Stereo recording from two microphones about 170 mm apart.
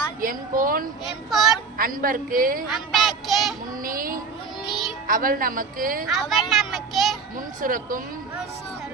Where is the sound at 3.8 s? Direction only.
55° right (ahead or behind).